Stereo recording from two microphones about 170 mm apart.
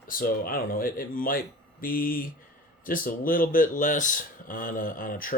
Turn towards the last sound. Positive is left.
turn(degrees=55)  # may be behind; listen again after turning